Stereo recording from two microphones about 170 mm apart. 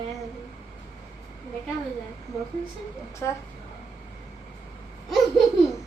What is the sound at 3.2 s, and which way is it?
Speech, 15° left (ahead or behind).